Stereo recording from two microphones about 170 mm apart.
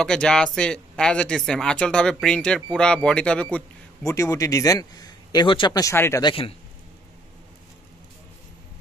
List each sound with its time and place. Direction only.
0.0 s speech: 5° left (ahead or behind)
4.0 s a man's voice: 20° left (ahead or behind)
6.2 s a man's voice: 30° left (ahead or behind)